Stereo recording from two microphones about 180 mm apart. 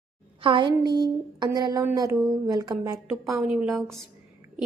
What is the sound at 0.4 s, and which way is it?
Speech, 25° right (ahead or behind).